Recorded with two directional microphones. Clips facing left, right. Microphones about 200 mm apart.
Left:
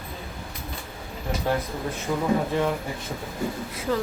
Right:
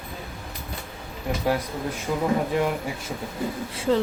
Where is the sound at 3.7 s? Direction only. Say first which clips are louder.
Right 5 dB; 30° right (ahead or behind).